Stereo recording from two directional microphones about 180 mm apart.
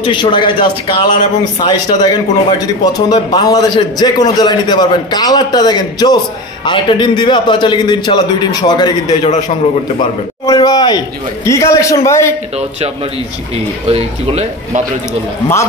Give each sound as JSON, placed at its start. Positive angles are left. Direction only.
{"t": 0.0, "sound": "a man's voice", "side_deg": 25}
{"t": 10.4, "sound": "a man's voice", "side_deg": 20}
{"t": 13.8, "sound": "speech", "side_deg": -35}